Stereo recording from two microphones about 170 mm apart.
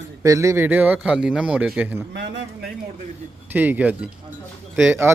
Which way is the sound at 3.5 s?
10° right (ahead or behind).